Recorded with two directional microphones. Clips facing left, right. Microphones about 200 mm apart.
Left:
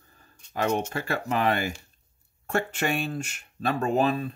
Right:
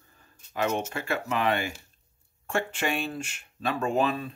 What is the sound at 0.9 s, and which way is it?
Speech, 35° left (ahead or behind).